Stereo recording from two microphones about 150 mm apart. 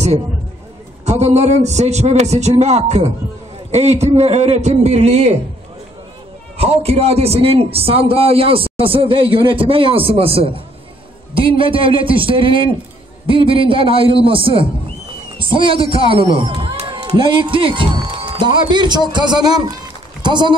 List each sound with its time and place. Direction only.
1.0 s a man's voice: 50° right (ahead or behind)
6.5 s a man's voice: 40° right (ahead or behind)